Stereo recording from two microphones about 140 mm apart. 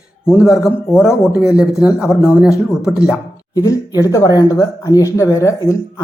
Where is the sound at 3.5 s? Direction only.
25° left (ahead or behind).